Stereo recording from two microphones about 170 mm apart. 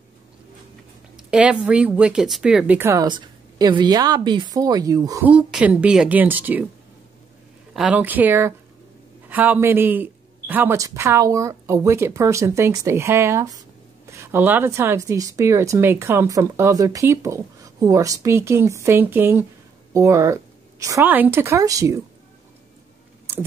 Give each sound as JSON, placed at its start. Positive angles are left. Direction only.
{"t": 1.1, "sound": "speech", "side_deg": -5}
{"t": 5.2, "sound": "speech", "side_deg": -5}
{"t": 7.7, "sound": "speech", "side_deg": -5}